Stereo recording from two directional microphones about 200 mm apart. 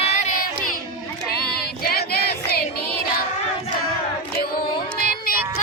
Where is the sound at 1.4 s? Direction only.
50° left (ahead or behind).